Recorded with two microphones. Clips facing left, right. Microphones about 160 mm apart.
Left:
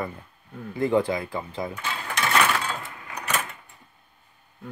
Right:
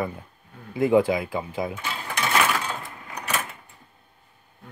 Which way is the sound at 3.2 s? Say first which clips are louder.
Even; centre (ahead or behind).